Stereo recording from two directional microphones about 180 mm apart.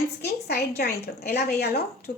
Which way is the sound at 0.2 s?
65° left (ahead or behind).